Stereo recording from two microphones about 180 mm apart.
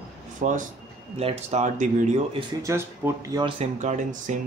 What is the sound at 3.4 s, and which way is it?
Speech, 35° right (ahead or behind).